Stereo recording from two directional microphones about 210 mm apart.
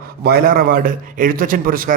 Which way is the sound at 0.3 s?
45° right (ahead or behind).